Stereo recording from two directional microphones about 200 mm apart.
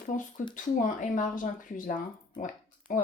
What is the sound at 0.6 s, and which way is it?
Speech, 40° left (ahead or behind).